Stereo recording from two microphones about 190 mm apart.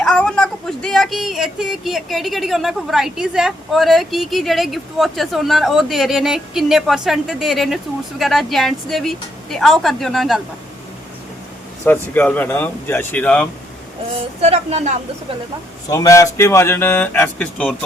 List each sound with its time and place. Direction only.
0.0 s speech: 5° left (ahead or behind)
11.9 s speech: 10° left (ahead or behind)
14.4 s a woman's voice: 35° right (ahead or behind)
15.9 s speech: 15° left (ahead or behind)